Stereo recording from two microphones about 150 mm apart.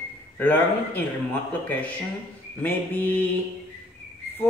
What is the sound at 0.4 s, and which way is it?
A man's voice, 10° left (ahead or behind).